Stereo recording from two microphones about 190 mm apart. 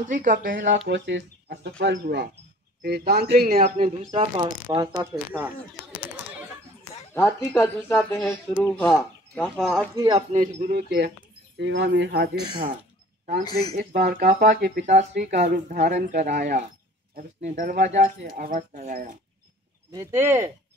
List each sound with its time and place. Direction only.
0.1 s speech: 40° right (ahead or behind)
0.7 s speech: 70° right (ahead or behind)
2.8 s speech: 55° right (ahead or behind)
3.5 s speech: 35° right (ahead or behind)
4.4 s speech: 20° right (ahead or behind)
5.2 s speech: 5° right (ahead or behind)
7.2 s a woman's voice: 15° left (ahead or behind)
8.2 s speech: 5° left (ahead or behind)
10.1 s speech: 40° right (ahead or behind)
10.7 s speech: 55° right (ahead or behind)
11.5 s speech: 65° right (ahead or behind)
13.7 s speech: 45° right (ahead or behind)
14.8 s speech: 40° right (ahead or behind)
19.9 s speech: 15° right (ahead or behind)